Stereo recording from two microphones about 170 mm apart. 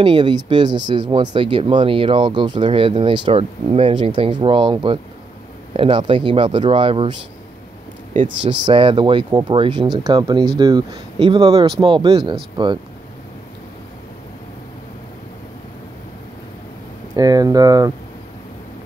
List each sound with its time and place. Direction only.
0.0 s speech: 30° right (ahead or behind)
8.5 s speech: 30° right (ahead or behind)
17.1 s speech: 20° right (ahead or behind)